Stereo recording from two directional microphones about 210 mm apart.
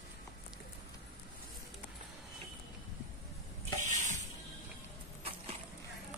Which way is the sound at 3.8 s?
35° right (ahead or behind).